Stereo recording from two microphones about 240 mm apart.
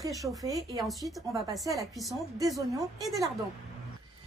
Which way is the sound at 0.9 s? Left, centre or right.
Centre.